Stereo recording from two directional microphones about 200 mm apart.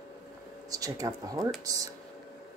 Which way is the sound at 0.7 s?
20° right (ahead or behind).